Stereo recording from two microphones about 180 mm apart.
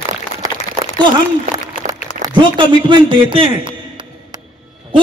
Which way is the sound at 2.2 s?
25° right (ahead or behind).